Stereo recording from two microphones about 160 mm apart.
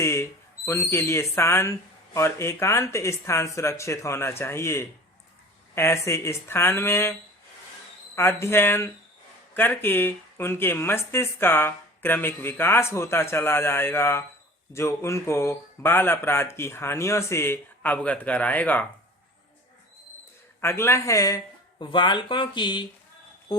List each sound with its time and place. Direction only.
0.0 s speech: 15° left (ahead or behind)
20.6 s speech: 15° left (ahead or behind)